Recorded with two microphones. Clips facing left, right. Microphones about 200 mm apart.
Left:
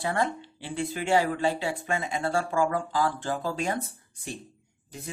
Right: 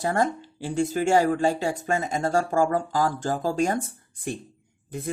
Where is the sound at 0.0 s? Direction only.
45° right (ahead or behind).